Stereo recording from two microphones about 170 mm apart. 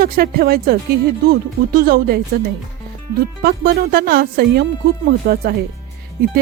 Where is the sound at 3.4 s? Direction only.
60° right (ahead or behind).